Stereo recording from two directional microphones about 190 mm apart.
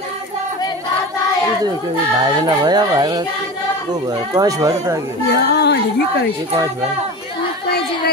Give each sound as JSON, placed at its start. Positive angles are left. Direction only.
{"t": 2.1, "sound": "speech", "side_deg": -20}
{"t": 5.3, "sound": "a woman's voice", "side_deg": 60}
{"t": 7.6, "sound": "a sound", "side_deg": 55}